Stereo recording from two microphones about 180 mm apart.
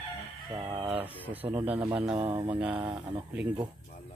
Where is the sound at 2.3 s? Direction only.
25° right (ahead or behind).